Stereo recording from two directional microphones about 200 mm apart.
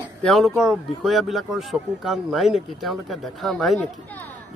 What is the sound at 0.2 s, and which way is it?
A man's voice, centre (ahead or behind).